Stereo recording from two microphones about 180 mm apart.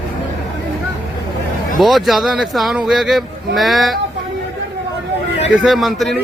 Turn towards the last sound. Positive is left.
turn(degrees=0)  # may be behind; listen again after turning